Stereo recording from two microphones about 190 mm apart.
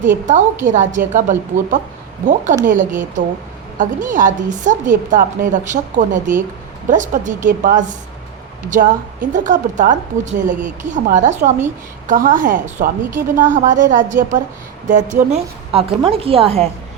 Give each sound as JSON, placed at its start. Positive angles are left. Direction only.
{"t": 0.0, "sound": "a woman's voice", "side_deg": -40}